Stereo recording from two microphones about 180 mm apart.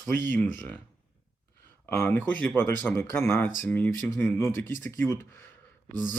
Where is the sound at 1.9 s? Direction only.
10° left (ahead or behind).